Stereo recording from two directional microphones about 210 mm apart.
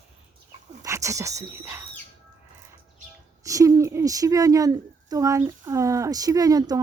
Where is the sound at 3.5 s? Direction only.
15° right (ahead or behind).